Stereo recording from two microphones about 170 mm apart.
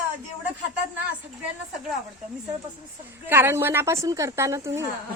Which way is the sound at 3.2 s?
15° right (ahead or behind).